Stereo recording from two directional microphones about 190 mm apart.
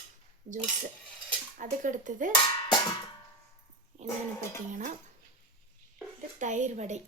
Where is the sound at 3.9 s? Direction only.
40° right (ahead or behind).